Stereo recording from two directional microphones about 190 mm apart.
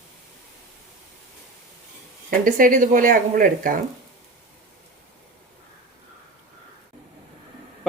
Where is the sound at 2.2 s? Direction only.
45° right (ahead or behind).